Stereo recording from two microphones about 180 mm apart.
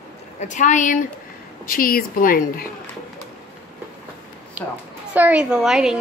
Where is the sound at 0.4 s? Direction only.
45° left (ahead or behind).